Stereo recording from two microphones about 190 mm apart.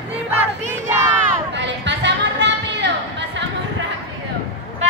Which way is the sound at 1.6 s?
65° right (ahead or behind).